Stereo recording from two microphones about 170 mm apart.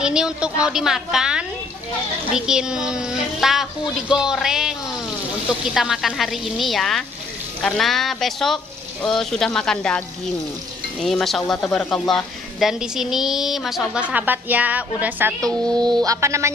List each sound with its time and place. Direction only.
0.0 s speech: 5° right (ahead or behind)
15.7 s speech: 25° right (ahead or behind)